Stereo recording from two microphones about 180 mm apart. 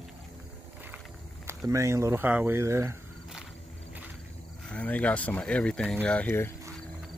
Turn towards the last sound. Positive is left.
turn(degrees=10)  # may be behind; listen again after turning